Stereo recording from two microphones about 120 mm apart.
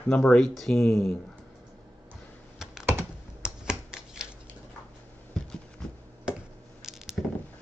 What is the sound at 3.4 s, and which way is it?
Typewriter, 5° right (ahead or behind).